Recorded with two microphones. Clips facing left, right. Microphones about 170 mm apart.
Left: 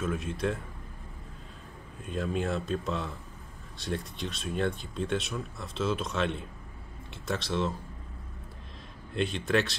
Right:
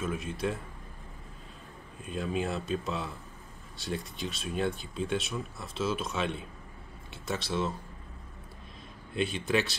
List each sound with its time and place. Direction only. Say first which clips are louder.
0.0 s speech: left 2 dB; centre (ahead or behind)
2.0 s speech: left 1 dB; centre (ahead or behind)
9.1 s speech: left 1 dB; 5° right (ahead or behind)